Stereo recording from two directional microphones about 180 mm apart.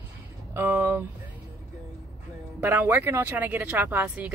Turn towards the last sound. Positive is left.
turn(degrees=-10)  # may be behind; listen again after turning